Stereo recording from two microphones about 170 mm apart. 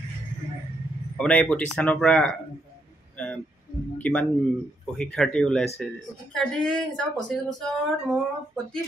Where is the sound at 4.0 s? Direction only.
10° left (ahead or behind).